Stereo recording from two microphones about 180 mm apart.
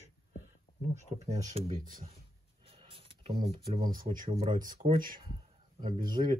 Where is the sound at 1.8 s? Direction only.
50° right (ahead or behind).